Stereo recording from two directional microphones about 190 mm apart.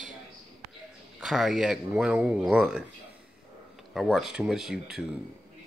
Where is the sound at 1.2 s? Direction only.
Centre (ahead or behind).